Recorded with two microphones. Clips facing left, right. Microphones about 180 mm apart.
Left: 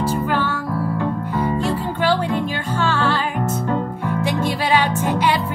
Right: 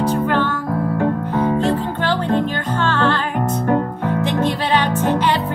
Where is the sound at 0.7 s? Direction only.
50° right (ahead or behind).